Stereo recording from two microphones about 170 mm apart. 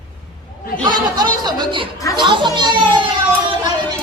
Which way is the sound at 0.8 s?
25° right (ahead or behind).